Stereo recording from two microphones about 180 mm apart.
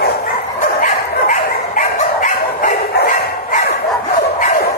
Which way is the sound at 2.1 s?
45° left (ahead or behind).